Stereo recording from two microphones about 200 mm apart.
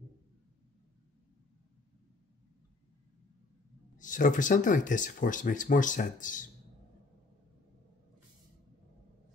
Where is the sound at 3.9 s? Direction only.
40° left (ahead or behind).